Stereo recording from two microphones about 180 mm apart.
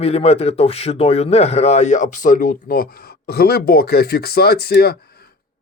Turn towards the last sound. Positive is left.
turn(degrees=60)  # may be behind; listen again after turning